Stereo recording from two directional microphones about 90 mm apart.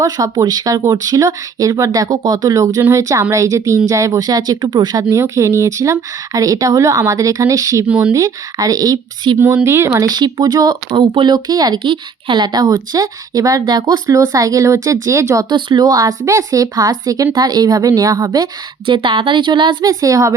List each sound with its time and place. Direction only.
0.0 s speech: 45° right (ahead or behind)
5.1 s speech: 35° right (ahead or behind)
7.9 s speech: 15° right (ahead or behind)
8.1 s speech: 40° right (ahead or behind)
9.2 s speech: 60° right (ahead or behind)
9.6 s speech: 30° right (ahead or behind)
10.0 s speech: 50° right (ahead or behind)
14.1 s speech: 40° right (ahead or behind)
15.4 s speech: 55° right (ahead or behind)
18.9 s speech: 60° right (ahead or behind)
19.8 s speech: 40° right (ahead or behind)